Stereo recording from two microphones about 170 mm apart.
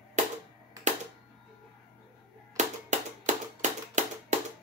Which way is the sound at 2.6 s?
45° right (ahead or behind).